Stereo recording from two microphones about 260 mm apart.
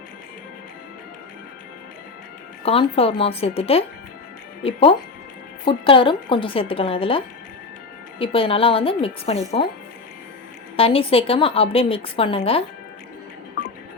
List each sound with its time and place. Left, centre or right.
2.6 s a woman's voice: left
8.2 s a woman's voice: left
10.8 s a woman's voice: left